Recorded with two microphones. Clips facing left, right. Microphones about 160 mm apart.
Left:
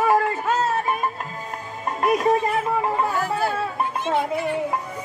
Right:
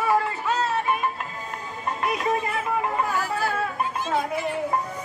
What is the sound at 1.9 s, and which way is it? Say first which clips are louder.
Music: left 8 dB; 45° left (ahead or behind).